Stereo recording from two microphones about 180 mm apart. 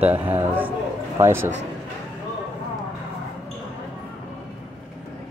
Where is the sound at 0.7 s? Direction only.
20° right (ahead or behind).